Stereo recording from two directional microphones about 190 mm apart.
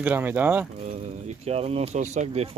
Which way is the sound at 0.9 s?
35° right (ahead or behind).